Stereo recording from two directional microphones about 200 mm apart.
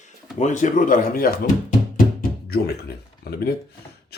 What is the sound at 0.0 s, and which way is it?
Speech, 35° left (ahead or behind).